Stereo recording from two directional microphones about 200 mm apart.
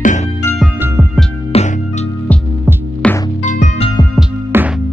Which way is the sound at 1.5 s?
30° left (ahead or behind).